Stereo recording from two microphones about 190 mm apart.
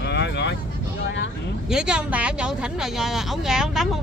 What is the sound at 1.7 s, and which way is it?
Speech, 5° right (ahead or behind).